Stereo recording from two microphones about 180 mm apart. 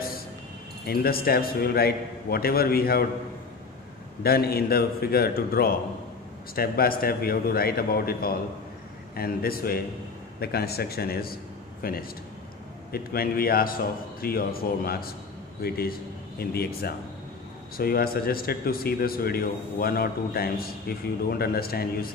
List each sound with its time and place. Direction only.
0.8 s a man's voice: 55° left (ahead or behind)
4.2 s a man's voice: 60° left (ahead or behind)